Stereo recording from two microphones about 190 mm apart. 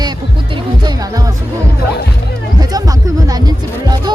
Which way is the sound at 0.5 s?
20° right (ahead or behind).